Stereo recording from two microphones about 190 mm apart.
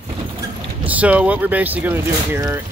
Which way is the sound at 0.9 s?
5° right (ahead or behind).